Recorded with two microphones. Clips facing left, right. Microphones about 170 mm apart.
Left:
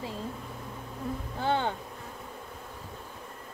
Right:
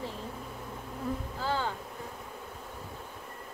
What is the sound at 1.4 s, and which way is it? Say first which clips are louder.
Music: left 5 dB; 65° left (ahead or behind).